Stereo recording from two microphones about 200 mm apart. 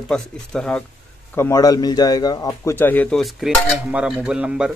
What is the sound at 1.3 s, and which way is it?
A man's voice, 15° left (ahead or behind).